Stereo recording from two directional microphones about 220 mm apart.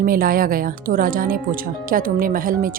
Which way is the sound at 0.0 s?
40° right (ahead or behind).